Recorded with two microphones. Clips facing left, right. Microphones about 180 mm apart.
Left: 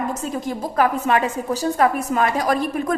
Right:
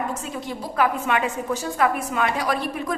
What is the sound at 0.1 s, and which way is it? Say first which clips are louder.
A woman's voice: left 5 dB; 45° left (ahead or behind).